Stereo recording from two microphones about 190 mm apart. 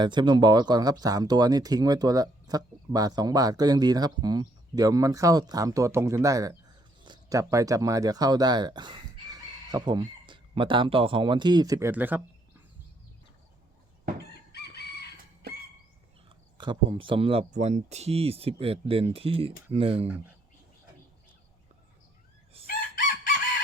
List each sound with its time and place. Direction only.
0.0 s speech: 25° right (ahead or behind)
16.6 s speech: 25° right (ahead or behind)
22.6 s chicken: 45° left (ahead or behind)